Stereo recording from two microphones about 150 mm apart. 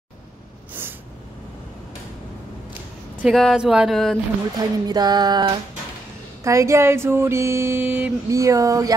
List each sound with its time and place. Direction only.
3.2 s speech: centre (ahead or behind)
4.6 s music: 25° right (ahead or behind)
6.4 s speech: 20° right (ahead or behind)